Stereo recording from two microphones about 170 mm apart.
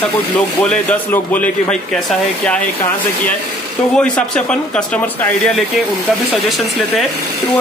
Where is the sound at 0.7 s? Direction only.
10° left (ahead or behind).